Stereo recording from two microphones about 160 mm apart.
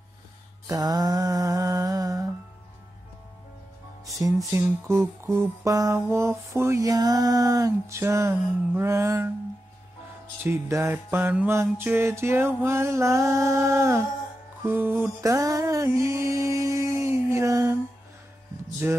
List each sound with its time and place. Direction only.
0.7 s mantra: 25° right (ahead or behind)
4.5 s mantra: 15° right (ahead or behind)
10.4 s mantra: 15° right (ahead or behind)
14.6 s music: 15° right (ahead or behind)
18.8 s mantra: 10° right (ahead or behind)